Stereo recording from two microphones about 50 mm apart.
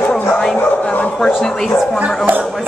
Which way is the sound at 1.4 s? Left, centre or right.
Centre.